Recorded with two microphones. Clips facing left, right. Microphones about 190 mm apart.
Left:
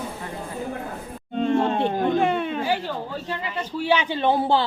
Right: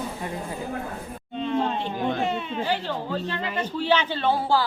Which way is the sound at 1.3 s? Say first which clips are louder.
Left 4 dB; 45° left (ahead or behind).